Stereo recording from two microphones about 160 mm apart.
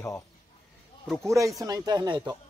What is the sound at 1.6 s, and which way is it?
Speech, 25° right (ahead or behind).